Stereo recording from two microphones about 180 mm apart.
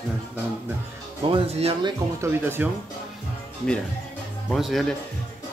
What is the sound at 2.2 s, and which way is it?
Speech, 10° right (ahead or behind).